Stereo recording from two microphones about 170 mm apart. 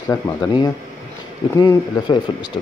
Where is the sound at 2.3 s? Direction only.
30° left (ahead or behind).